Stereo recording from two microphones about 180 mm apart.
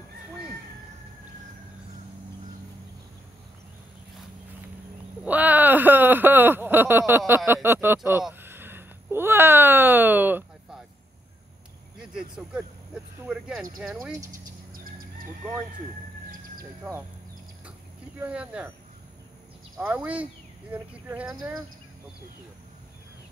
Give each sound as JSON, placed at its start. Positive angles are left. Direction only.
{"t": 5.2, "sound": "a sound", "side_deg": -10}
{"t": 12.0, "sound": "vehicle", "side_deg": -5}
{"t": 14.7, "sound": "chicken", "side_deg": -55}
{"t": 18.2, "sound": "speech", "side_deg": -5}
{"t": 19.8, "sound": "speech", "side_deg": -10}